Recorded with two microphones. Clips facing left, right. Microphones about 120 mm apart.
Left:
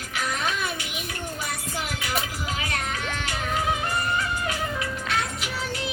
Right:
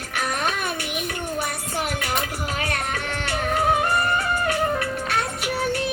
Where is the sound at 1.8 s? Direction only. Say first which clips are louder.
Right 5 dB; 55° right (ahead or behind).